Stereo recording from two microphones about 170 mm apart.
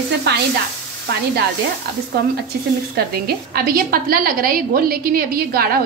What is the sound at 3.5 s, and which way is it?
A woman's voice, 60° right (ahead or behind).